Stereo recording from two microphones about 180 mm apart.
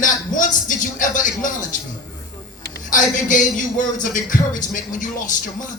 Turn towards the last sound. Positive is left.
turn(degrees=45)  # may be behind; listen again after turning